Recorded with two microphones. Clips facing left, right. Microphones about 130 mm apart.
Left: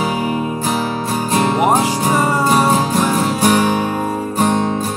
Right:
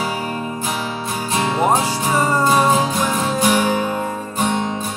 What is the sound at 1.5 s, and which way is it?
Music, 15° left (ahead or behind).